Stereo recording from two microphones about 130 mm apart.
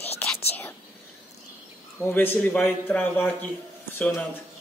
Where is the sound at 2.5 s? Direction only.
5° left (ahead or behind).